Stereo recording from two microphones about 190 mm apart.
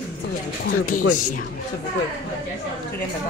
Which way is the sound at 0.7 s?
45° left (ahead or behind).